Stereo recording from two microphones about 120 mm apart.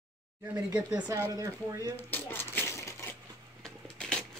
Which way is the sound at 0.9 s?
35° right (ahead or behind).